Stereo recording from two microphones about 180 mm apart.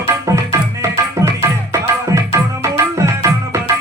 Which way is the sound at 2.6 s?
15° right (ahead or behind).